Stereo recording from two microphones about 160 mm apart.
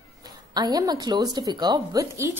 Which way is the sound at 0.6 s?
25° right (ahead or behind).